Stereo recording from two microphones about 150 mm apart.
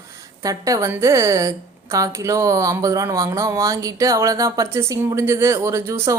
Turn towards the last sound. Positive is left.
turn(degrees=-20)  # may be behind; listen again after turning